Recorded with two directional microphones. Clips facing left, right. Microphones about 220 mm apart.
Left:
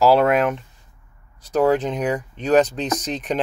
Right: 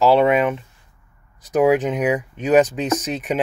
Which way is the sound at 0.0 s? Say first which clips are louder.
Right 1 dB; centre (ahead or behind).